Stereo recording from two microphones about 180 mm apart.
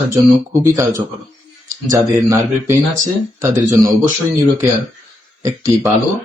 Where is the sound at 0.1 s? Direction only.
20° right (ahead or behind).